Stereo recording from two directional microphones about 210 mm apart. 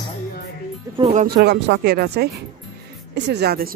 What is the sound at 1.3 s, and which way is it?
A woman's voice, 50° right (ahead or behind).